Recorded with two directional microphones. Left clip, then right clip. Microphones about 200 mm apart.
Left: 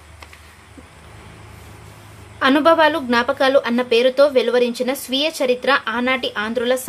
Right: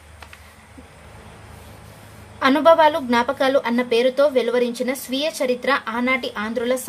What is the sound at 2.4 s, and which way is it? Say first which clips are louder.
A woman's voice: even; 10° left (ahead or behind).